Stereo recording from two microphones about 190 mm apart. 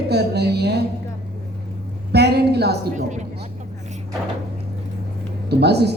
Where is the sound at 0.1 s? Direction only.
60° right (ahead or behind).